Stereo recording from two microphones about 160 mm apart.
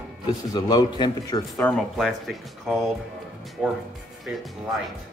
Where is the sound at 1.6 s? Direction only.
5° left (ahead or behind).